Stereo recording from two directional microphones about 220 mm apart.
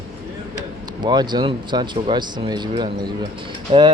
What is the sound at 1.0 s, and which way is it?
Speech, 20° right (ahead or behind).